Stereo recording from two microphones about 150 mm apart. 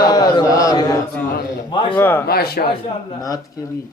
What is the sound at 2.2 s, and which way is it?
Speech, 90° left.